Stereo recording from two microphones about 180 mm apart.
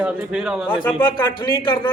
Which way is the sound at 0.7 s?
25° left (ahead or behind).